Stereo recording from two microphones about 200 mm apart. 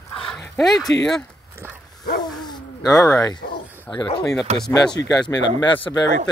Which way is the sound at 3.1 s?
15° left (ahead or behind).